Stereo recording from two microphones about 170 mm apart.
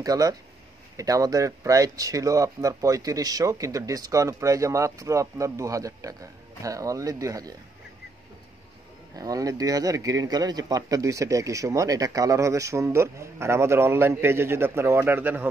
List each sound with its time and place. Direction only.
0.0 s a man's voice: 20° right (ahead or behind)
9.1 s a man's voice: 20° right (ahead or behind)